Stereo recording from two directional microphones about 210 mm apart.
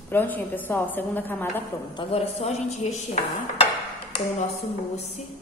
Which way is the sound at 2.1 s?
30° left (ahead or behind).